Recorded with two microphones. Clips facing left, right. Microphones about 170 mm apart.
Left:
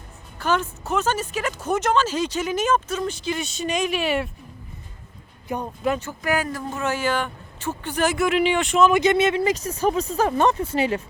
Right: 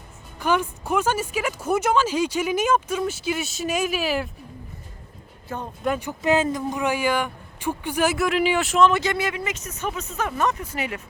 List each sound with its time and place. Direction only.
0.3 s speech: 10° right (ahead or behind)
5.5 s speech: 15° left (ahead or behind)
6.0 s speech: 20° right (ahead or behind); by 8.9 s centre (ahead or behind)
8.9 s speech: 20° left (ahead or behind)